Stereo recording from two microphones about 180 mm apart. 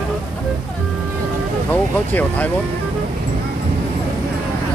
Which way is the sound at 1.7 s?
10° left (ahead or behind).